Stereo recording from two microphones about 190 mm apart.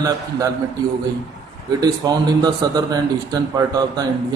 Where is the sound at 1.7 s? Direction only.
20° right (ahead or behind).